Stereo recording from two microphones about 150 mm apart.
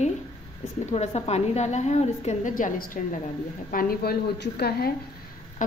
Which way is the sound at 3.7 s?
75° left (ahead or behind).